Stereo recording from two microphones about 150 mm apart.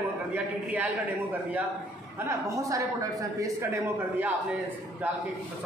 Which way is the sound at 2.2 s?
20° right (ahead or behind).